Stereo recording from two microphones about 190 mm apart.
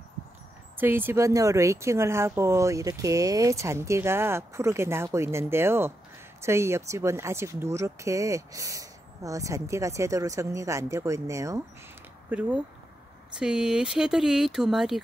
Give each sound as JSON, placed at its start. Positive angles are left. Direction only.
{"t": 0.7, "sound": "speech", "side_deg": -10}